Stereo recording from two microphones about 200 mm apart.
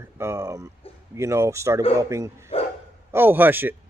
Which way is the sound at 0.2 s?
15° right (ahead or behind).